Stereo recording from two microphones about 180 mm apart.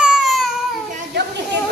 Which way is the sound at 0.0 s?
5° right (ahead or behind).